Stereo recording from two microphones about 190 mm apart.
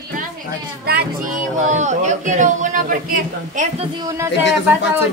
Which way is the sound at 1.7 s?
40° right (ahead or behind).